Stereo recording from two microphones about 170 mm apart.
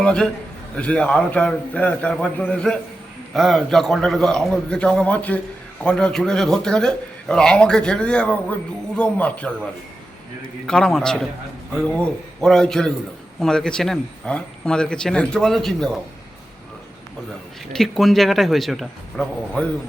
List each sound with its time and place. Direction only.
0.0 s a man's voice: 5° left (ahead or behind)
10.7 s a man's voice: 5° left (ahead or behind)
17.7 s a man's voice: centre (ahead or behind)